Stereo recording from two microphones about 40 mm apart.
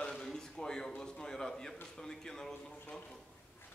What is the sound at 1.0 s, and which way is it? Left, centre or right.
A man's voice, centre.